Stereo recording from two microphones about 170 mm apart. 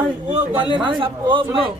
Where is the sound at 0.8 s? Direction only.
30° right (ahead or behind).